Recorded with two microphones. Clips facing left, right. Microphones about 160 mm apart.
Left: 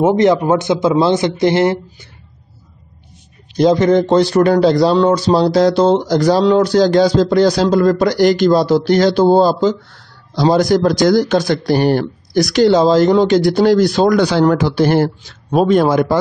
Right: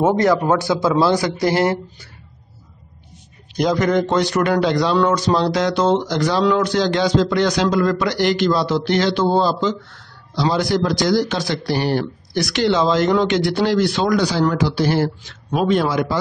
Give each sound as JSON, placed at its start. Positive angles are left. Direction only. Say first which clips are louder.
{"t": 0.0, "sound": "a man's voice", "louder": "left 4 dB", "side_deg": 20}
{"t": 3.5, "sound": "a man's voice", "louder": "left 6 dB", "side_deg": 30}
{"t": 15.2, "sound": "a man's voice", "louder": "left 5 dB", "side_deg": 40}